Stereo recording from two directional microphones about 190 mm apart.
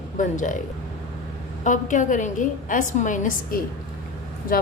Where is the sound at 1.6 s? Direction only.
40° left (ahead or behind).